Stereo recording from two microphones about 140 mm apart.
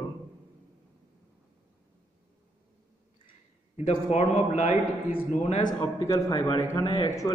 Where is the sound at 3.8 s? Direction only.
50° left (ahead or behind).